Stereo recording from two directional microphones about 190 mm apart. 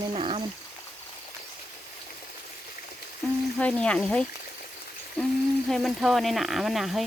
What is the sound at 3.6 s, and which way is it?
Speech, 5° left (ahead or behind).